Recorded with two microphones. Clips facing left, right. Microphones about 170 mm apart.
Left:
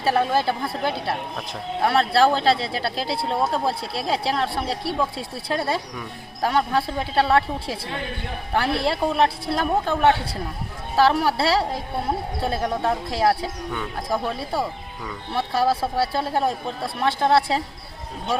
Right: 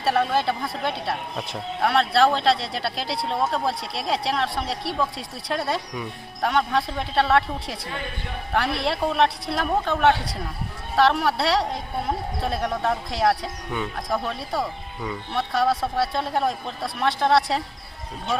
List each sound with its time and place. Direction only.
0.0 s speech: centre (ahead or behind)
0.6 s a man's voice: 30° left (ahead or behind)
0.9 s speech: centre (ahead or behind)
8.6 s a woman's voice: centre (ahead or behind)
12.6 s a man's voice: 30° left (ahead or behind)
13.1 s speech: centre (ahead or behind)
15.3 s a man's voice: 30° left (ahead or behind)
15.8 s speech: 5° left (ahead or behind)
16.5 s a man's voice: 30° left (ahead or behind)
17.2 s speech: centre (ahead or behind)